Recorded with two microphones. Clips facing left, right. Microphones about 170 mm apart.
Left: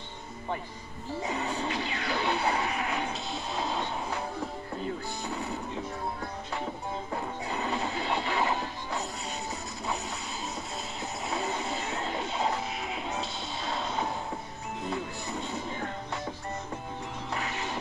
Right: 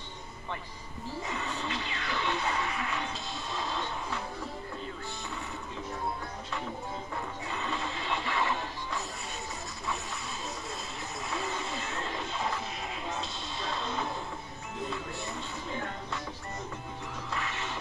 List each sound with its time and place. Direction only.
1.3 s music: 35° left (ahead or behind)
7.4 s music: 40° left (ahead or behind)
11.2 s vehicle: 35° left (ahead or behind)
17.3 s music: 40° left (ahead or behind)